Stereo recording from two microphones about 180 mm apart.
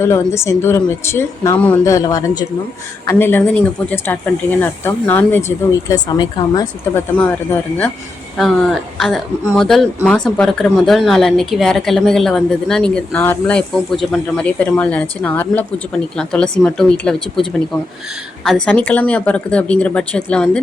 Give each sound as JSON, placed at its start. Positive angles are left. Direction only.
{"t": 0.0, "sound": "speech", "side_deg": 15}
{"t": 1.9, "sound": "speech", "side_deg": 20}
{"t": 8.4, "sound": "speech", "side_deg": 0}
{"t": 18.4, "sound": "speech", "side_deg": 5}